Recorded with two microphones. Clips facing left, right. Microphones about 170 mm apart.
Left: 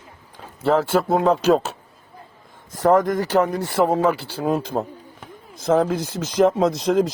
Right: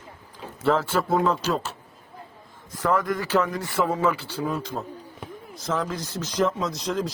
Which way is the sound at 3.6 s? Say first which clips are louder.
Left 6 dB; 70° left (ahead or behind).